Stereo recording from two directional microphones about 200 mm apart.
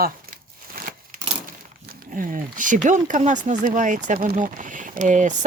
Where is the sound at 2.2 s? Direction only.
45° right (ahead or behind).